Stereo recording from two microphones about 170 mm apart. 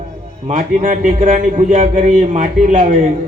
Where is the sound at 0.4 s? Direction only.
50° right (ahead or behind).